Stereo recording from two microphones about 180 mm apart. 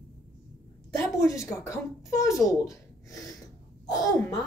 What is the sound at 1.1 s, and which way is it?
Speech, 15° left (ahead or behind).